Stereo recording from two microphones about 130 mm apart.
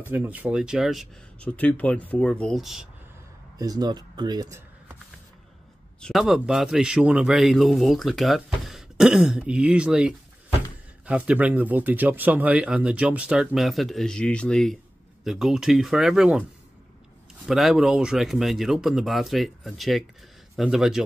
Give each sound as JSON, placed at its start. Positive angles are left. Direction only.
{"t": 0.1, "sound": "speech", "side_deg": -15}
{"t": 1.4, "sound": "speech", "side_deg": 10}
{"t": 3.5, "sound": "speech", "side_deg": -30}
{"t": 5.9, "sound": "a man's voice", "side_deg": 0}
{"t": 17.5, "sound": "a man's voice", "side_deg": 0}